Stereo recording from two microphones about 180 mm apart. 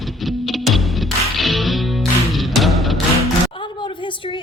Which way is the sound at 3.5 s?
25° left (ahead or behind).